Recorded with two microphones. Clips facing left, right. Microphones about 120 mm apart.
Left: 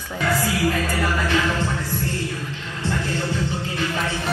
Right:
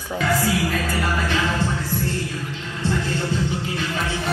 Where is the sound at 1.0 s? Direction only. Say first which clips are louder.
Left 1 dB; 15° right (ahead or behind).